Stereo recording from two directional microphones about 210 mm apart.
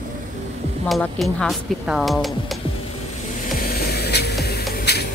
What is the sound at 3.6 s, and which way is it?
Music, 50° left (ahead or behind).